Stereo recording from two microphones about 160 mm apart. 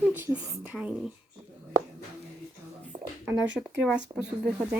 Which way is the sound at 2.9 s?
35° right (ahead or behind).